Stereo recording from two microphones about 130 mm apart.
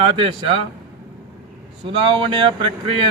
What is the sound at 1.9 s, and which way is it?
Speech, 40° right (ahead or behind).